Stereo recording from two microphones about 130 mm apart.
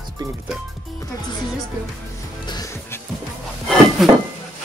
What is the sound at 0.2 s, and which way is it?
Speech, 30° right (ahead or behind).